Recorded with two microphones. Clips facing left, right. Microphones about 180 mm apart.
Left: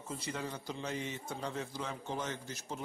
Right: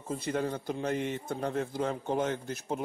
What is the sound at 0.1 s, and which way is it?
A man's voice, 55° right (ahead or behind).